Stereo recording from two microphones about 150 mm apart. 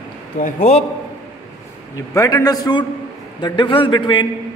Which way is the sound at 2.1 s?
25° left (ahead or behind).